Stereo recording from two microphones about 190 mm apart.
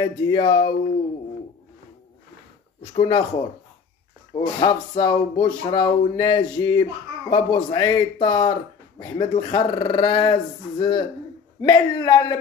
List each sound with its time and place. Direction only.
0.0 s speech: 25° left (ahead or behind)
2.8 s speech: 25° left (ahead or behind)
4.3 s speech: 25° left (ahead or behind)